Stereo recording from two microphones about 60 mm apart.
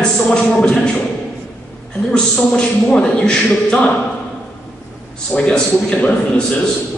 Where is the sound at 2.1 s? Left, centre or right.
Centre.